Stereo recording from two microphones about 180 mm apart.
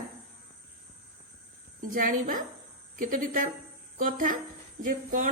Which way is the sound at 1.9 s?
50° right (ahead or behind).